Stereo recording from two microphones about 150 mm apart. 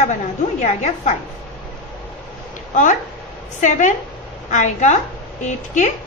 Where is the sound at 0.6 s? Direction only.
50° left (ahead or behind).